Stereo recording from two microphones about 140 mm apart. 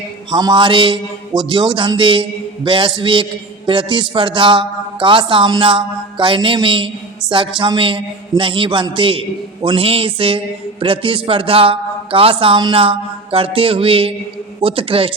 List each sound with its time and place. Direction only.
0.3 s a man's voice: 30° right (ahead or behind)